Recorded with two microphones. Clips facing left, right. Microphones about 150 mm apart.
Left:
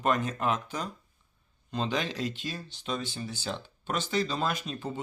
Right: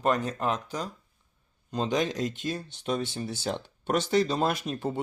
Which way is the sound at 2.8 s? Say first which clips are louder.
Right 4 dB; 55° right (ahead or behind).